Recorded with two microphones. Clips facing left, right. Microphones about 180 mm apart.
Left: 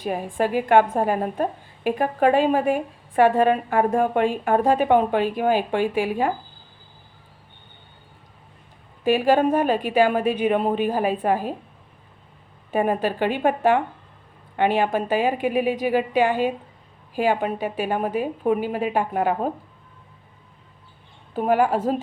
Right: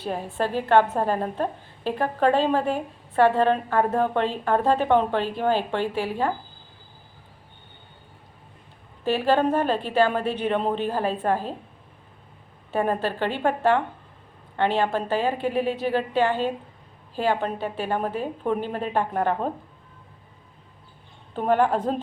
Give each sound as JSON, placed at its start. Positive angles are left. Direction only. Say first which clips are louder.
{"t": 0.0, "sound": "a woman's voice", "louder": "left 3 dB", "side_deg": 10}
{"t": 9.0, "sound": "a woman's voice", "louder": "left 3 dB", "side_deg": 10}
{"t": 12.7, "sound": "a woman's voice", "louder": "left 3 dB", "side_deg": 15}
{"t": 21.3, "sound": "a woman's voice", "louder": "left 1 dB", "side_deg": 10}